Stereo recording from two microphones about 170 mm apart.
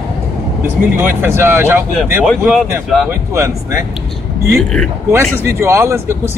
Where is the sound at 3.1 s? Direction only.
15° right (ahead or behind).